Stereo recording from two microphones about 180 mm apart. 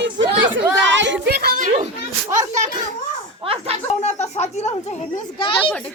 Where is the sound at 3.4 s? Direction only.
30° right (ahead or behind).